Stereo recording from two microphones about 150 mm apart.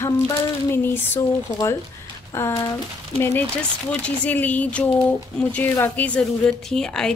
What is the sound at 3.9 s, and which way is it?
A woman's voice, 10° left (ahead or behind).